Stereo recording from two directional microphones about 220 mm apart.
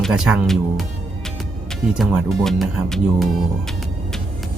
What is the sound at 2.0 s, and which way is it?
Speech, centre (ahead or behind).